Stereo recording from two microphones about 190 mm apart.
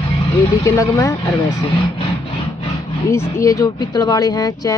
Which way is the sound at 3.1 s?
15° left (ahead or behind).